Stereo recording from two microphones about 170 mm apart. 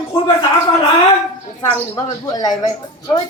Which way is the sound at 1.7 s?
20° left (ahead or behind).